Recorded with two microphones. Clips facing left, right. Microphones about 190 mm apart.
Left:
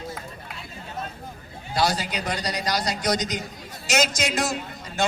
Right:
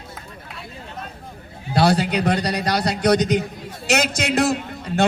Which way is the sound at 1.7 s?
60° right (ahead or behind).